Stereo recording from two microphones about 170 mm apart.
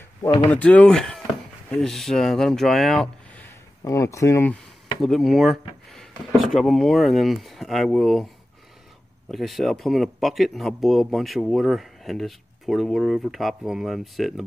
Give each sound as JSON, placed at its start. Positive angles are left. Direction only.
{"t": 0.5, "sound": "speech", "side_deg": 10}
{"t": 3.4, "sound": "speech", "side_deg": 20}
{"t": 5.0, "sound": "speech", "side_deg": 0}
{"t": 9.3, "sound": "speech", "side_deg": 0}